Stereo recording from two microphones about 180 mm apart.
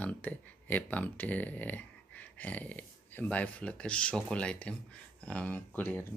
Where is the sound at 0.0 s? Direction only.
10° left (ahead or behind).